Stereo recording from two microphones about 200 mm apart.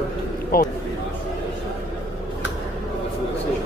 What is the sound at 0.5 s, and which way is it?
Speech, 45° left (ahead or behind).